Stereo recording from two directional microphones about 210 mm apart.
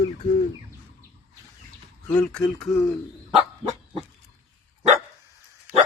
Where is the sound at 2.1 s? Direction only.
5° left (ahead or behind).